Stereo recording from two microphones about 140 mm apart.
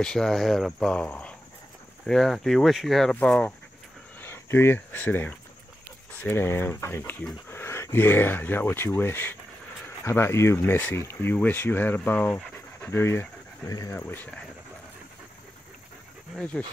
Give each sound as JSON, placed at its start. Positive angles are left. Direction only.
{"t": 0.0, "sound": "speech", "side_deg": 5}
{"t": 16.3, "sound": "speech", "side_deg": 10}